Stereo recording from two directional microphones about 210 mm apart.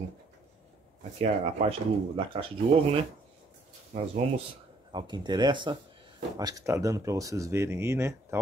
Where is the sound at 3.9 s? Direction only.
35° right (ahead or behind).